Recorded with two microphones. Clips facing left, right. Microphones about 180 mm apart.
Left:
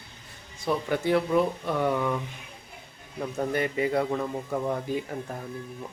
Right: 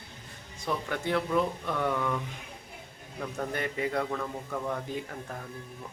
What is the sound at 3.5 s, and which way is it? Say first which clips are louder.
Speech: left 6 dB; 5° left (ahead or behind).